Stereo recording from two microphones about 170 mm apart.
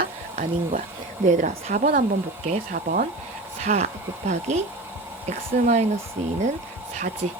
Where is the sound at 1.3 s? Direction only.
45° right (ahead or behind).